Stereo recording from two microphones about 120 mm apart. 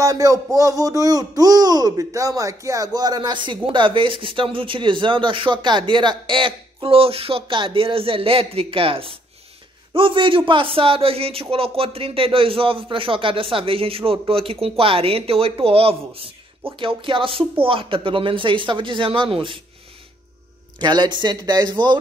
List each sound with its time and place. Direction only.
0.0 s speech: 30° right (ahead or behind); by 19.6 s 45° right (ahead or behind)
20.8 s speech: 35° right (ahead or behind)